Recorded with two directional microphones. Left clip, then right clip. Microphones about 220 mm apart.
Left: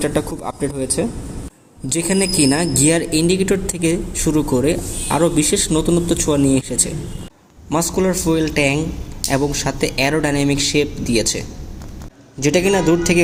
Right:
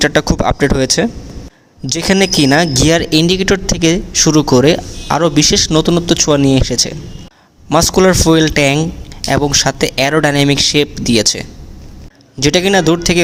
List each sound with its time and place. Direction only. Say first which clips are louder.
0.0 s speech: right 9 dB; 45° right (ahead or behind)